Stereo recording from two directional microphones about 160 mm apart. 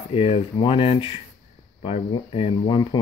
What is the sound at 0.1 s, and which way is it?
Speech, 35° left (ahead or behind).